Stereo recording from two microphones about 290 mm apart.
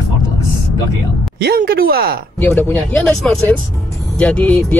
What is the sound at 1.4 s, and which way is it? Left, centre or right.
Speech, right.